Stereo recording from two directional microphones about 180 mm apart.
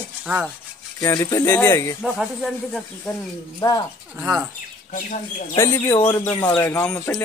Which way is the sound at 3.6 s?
20° left (ahead or behind).